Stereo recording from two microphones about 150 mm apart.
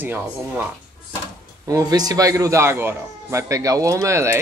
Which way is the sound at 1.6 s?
25° right (ahead or behind).